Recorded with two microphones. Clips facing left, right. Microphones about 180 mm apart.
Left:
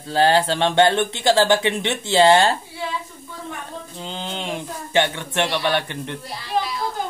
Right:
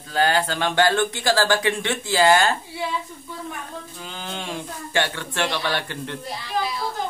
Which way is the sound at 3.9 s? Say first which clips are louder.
Left 6 dB; 25° left (ahead or behind).